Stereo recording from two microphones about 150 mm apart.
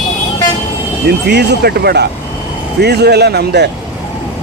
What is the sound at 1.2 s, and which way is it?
Speech, 90° right.